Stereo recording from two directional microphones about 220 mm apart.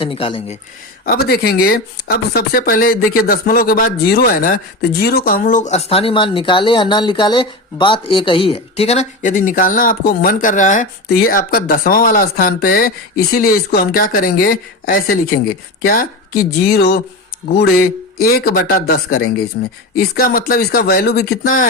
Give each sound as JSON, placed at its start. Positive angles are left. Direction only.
{"t": 0.0, "sound": "speech", "side_deg": 25}
{"t": 1.0, "sound": "speech", "side_deg": 45}